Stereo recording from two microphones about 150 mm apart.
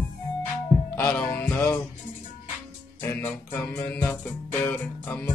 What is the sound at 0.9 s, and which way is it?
Music, 10° left (ahead or behind).